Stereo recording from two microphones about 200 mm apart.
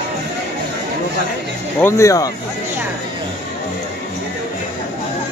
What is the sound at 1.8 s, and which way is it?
Speech, 15° left (ahead or behind).